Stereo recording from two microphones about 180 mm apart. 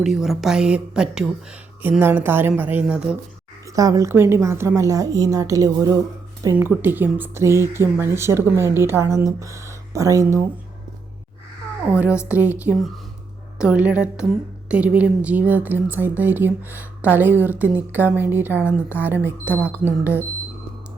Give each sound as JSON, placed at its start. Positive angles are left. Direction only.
{"t": 0.0, "sound": "a woman's voice", "side_deg": 0}
{"t": 3.7, "sound": "speech", "side_deg": -20}
{"t": 11.9, "sound": "a woman's voice", "side_deg": -10}